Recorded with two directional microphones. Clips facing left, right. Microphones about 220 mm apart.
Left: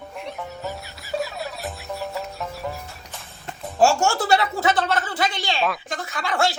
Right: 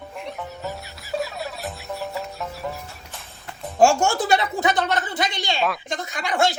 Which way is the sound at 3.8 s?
15° right (ahead or behind).